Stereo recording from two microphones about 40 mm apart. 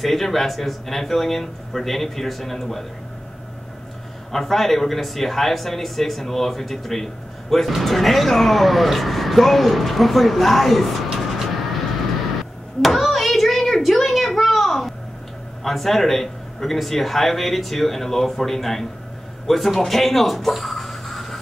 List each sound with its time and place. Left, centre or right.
0.0 s speech: centre
4.3 s speech: centre
11.1 s vehicle: centre
12.8 s a sound: centre
15.6 s speech: centre